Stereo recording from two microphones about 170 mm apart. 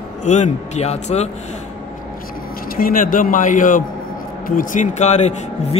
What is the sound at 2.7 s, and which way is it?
Speech, 55° left (ahead or behind).